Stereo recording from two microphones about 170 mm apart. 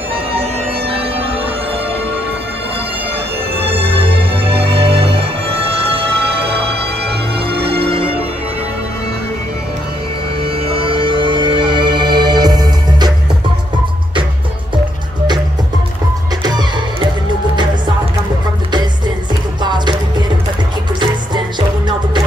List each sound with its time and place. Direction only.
0.1 s music: 35° right (ahead or behind)
3.8 s music: 80° right
7.3 s music: 75° right (ahead or behind)
7.8 s music: 35° right (ahead or behind)
10.4 s music: 30° right (ahead or behind)
19.6 s music: 25° right (ahead or behind)